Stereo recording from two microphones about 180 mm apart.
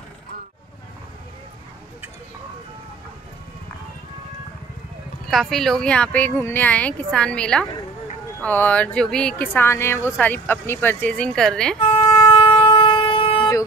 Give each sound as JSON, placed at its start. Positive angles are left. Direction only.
{"t": 5.3, "sound": "speech", "side_deg": 0}
{"t": 12.0, "sound": "shofar", "side_deg": 25}